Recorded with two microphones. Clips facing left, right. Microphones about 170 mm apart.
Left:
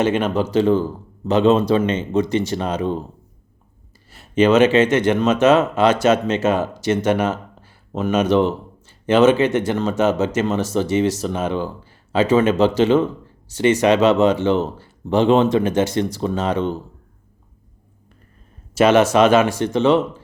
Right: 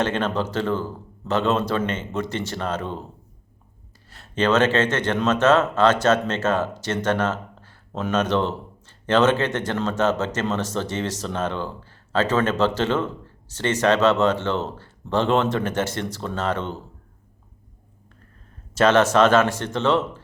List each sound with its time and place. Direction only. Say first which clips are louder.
0.0 s speech: left 5 dB; 10° left (ahead or behind)
4.1 s speech: left 6 dB; 10° left (ahead or behind)
18.7 s speech: left 3 dB; 10° left (ahead or behind)